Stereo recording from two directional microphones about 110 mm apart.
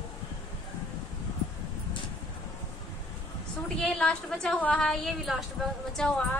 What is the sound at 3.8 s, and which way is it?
A woman's voice, 10° left (ahead or behind).